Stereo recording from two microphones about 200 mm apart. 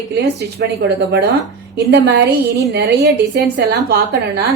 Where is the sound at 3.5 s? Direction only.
55° right (ahead or behind).